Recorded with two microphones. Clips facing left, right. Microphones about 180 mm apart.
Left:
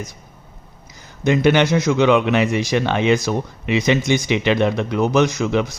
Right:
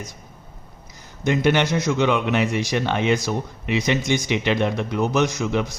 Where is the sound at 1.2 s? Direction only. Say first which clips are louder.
Left 4 dB; 90° left.